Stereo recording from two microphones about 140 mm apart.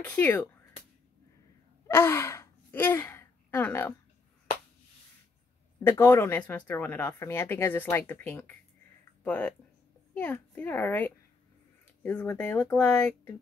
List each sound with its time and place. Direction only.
0.0 s speech: 10° left (ahead or behind)
1.9 s gasp: 15° left (ahead or behind)
5.8 s speech: 15° left (ahead or behind)